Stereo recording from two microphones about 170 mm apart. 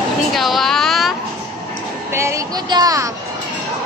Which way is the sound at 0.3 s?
Centre (ahead or behind).